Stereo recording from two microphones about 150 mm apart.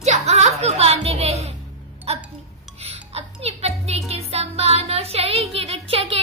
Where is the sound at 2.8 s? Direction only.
45° right (ahead or behind).